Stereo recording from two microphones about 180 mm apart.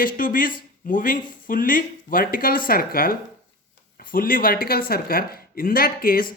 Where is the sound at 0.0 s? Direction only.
50° left (ahead or behind).